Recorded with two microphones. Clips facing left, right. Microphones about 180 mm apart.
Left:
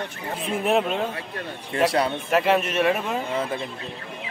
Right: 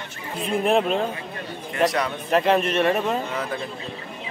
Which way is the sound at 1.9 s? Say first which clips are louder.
Left 2 dB; 30° left (ahead or behind).